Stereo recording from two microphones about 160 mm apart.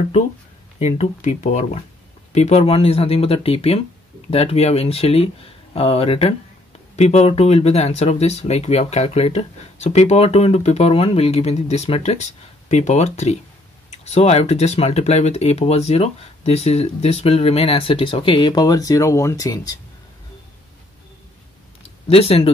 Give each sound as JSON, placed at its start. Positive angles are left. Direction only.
{"t": 0.7, "sound": "speech", "side_deg": 40}
{"t": 22.0, "sound": "speech", "side_deg": 40}